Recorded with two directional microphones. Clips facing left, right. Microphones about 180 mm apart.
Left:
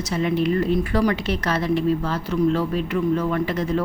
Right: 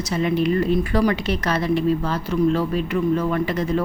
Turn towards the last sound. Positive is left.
turn(degrees=-15)  # may be behind; listen again after turning